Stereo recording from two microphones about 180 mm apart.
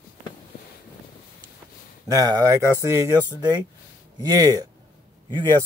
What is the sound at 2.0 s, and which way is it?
Speech, 20° right (ahead or behind).